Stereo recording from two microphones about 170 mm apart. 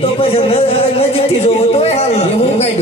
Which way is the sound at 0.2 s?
35° left (ahead or behind).